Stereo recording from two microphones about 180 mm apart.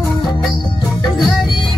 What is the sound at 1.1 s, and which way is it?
Music, centre (ahead or behind).